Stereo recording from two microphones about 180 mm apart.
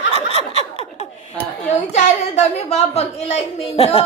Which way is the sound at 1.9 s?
40° left (ahead or behind).